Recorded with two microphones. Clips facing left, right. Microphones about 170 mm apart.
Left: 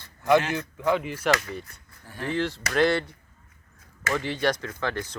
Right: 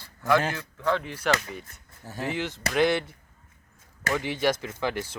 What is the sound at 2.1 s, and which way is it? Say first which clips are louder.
Speech: left 3 dB; 5° right (ahead or behind).